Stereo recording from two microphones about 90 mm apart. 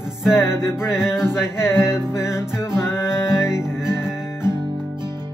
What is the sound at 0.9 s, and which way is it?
Music, 5° right (ahead or behind).